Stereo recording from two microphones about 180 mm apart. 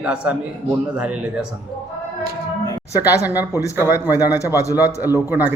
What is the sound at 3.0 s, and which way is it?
A man's voice, 10° right (ahead or behind).